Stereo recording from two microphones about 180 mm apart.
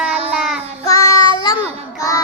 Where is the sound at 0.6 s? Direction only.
35° right (ahead or behind).